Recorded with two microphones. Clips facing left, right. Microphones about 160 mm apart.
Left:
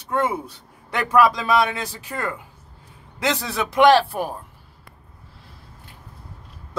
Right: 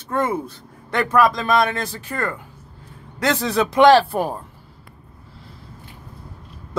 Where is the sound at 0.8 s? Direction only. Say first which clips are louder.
Even; 10° left (ahead or behind).